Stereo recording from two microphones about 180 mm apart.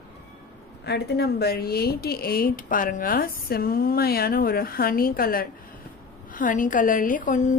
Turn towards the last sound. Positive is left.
turn(degrees=45)  # may be behind; listen again after turning